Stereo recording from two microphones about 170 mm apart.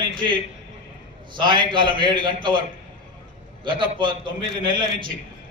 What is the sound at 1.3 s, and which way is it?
A man's voice, 25° right (ahead or behind).